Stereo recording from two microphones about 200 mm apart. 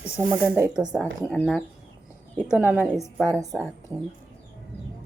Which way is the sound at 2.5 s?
10° right (ahead or behind).